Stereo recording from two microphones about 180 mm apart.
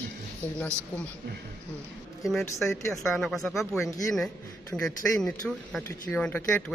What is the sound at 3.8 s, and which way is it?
Speech, 20° left (ahead or behind).